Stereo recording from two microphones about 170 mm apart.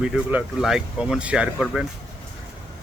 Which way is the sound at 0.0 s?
5° right (ahead or behind).